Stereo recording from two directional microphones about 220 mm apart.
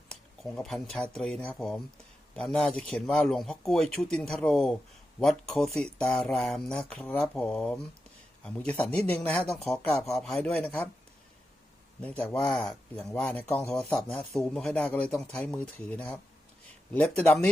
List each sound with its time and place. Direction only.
0.1 s speech: centre (ahead or behind)
11.9 s speech: 5° left (ahead or behind)